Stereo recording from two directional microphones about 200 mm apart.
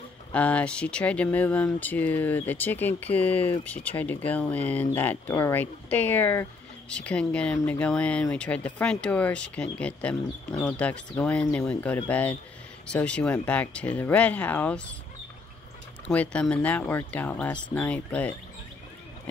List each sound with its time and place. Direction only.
0.3 s speech: 5° left (ahead or behind)
16.1 s speech: 5° left (ahead or behind)